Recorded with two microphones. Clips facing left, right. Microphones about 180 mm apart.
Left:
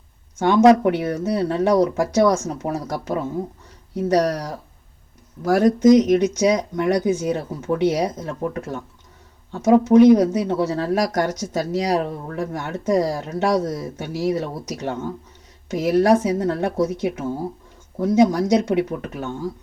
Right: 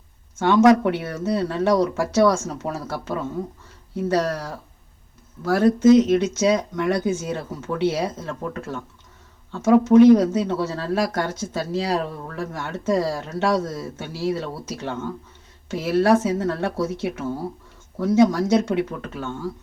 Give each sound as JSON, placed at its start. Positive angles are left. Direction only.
{"t": 0.5, "sound": "speech", "side_deg": 30}
{"t": 0.9, "sound": "speech", "side_deg": 15}
{"t": 5.5, "sound": "speech", "side_deg": 15}
{"t": 10.9, "sound": "speech", "side_deg": 45}
{"t": 11.8, "sound": "speech", "side_deg": 15}
{"t": 14.8, "sound": "speech", "side_deg": 40}
{"t": 15.7, "sound": "speech", "side_deg": 15}